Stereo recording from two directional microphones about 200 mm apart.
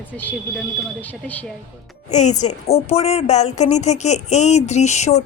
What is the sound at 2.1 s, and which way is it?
Speech, 35° left (ahead or behind).